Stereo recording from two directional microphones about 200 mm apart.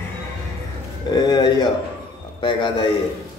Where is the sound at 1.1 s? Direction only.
20° left (ahead or behind).